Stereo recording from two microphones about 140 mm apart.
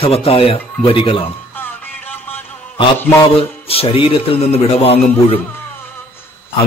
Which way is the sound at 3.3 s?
40° left (ahead or behind).